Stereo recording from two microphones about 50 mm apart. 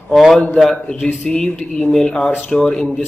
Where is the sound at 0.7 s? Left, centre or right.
Left.